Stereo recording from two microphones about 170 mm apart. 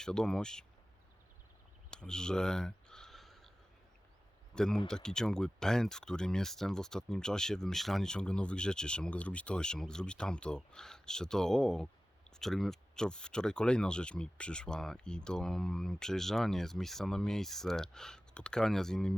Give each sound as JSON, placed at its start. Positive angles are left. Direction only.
{"t": 0.0, "sound": "speech", "side_deg": 5}
{"t": 1.9, "sound": "a sound", "side_deg": 5}
{"t": 4.5, "sound": "speech", "side_deg": 5}